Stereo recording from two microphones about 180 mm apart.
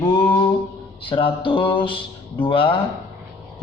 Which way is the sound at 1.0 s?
30° left (ahead or behind).